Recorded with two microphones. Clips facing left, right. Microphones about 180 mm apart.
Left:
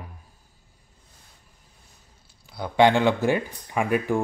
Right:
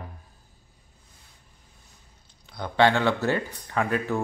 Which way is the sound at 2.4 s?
10° left (ahead or behind).